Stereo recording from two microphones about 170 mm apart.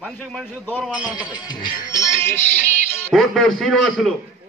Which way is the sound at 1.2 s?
25° left (ahead or behind).